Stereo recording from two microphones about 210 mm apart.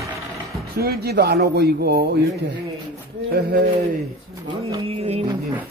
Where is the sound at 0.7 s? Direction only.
50° right (ahead or behind).